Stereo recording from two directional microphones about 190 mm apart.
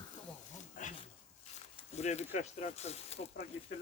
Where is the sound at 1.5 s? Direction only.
35° left (ahead or behind).